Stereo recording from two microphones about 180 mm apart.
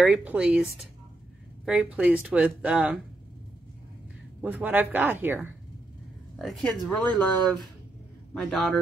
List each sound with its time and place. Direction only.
0.0 s speech: 10° right (ahead or behind)
1.7 s speech: 5° right (ahead or behind)
4.4 s speech: 10° right (ahead or behind)
6.3 s a man's voice: 5° left (ahead or behind)